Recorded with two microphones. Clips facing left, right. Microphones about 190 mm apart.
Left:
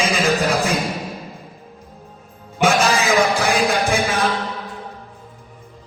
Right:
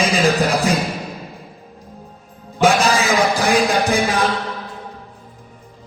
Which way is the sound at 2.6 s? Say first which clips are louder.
Right 2 dB; 35° right (ahead or behind).